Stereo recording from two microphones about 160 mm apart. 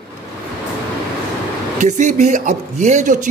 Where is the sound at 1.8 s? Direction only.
50° right (ahead or behind).